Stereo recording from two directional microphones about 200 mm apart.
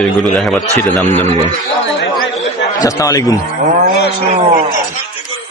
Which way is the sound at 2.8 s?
15° left (ahead or behind).